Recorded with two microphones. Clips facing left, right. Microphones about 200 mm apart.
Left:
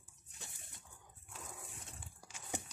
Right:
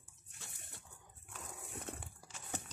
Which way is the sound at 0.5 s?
60° right (ahead or behind).